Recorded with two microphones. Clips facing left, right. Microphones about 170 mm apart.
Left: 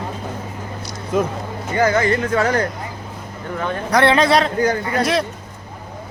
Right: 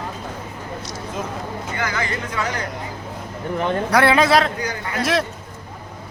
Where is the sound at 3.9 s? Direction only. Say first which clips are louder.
Left 2 dB; 5° right (ahead or behind).